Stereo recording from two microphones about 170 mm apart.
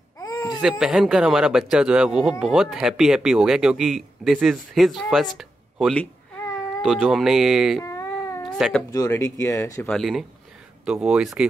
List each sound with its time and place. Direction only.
0.2 s baby cry: 20° left (ahead or behind)
0.6 s speech: 5° right (ahead or behind)
5.4 s a sound: centre (ahead or behind)
6.8 s speech: centre (ahead or behind)
7.8 s a sound: 15° left (ahead or behind)
8.5 s speech: 5° right (ahead or behind)
8.9 s speech: 20° left (ahead or behind)
9.8 s speech: centre (ahead or behind)